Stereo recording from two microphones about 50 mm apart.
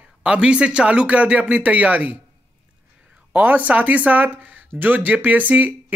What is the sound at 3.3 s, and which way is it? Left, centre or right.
Speech, right.